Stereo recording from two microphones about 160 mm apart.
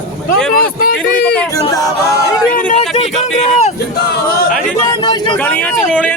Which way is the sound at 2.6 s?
55° left (ahead or behind).